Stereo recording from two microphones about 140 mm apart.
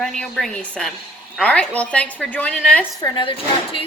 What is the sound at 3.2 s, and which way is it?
Speech, 40° left (ahead or behind).